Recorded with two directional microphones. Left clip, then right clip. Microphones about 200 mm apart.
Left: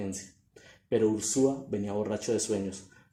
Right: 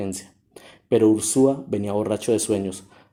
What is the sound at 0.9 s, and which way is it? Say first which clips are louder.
Speech: right 9 dB; 50° right (ahead or behind).